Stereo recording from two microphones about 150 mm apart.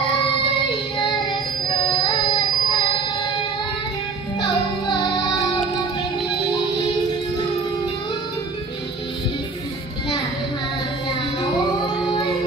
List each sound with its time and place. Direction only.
1.9 s music: 30° left (ahead or behind)
4.4 s music: 30° left (ahead or behind)